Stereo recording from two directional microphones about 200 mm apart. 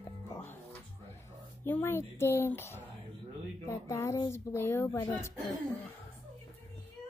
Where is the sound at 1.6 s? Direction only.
10° left (ahead or behind).